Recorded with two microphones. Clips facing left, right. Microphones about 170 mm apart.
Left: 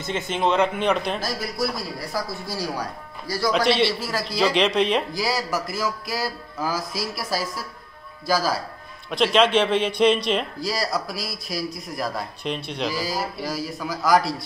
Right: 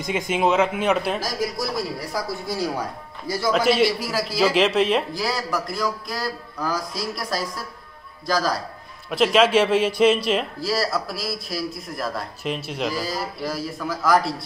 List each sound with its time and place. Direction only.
0.0 s speech: 10° right (ahead or behind)
2.4 s speech: 20° right (ahead or behind)
3.5 s a man's voice: 5° right (ahead or behind)
9.1 s a man's voice: 5° right (ahead or behind)